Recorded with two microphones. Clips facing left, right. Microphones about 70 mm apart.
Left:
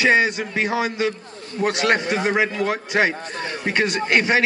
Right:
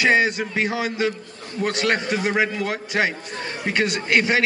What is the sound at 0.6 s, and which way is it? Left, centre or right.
A man's voice, left.